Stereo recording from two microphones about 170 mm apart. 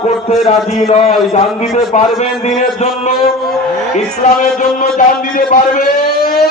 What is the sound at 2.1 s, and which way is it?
Speech, 40° left (ahead or behind).